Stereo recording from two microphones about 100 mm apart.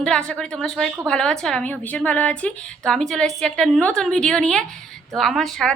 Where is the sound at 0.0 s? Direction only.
5° left (ahead or behind).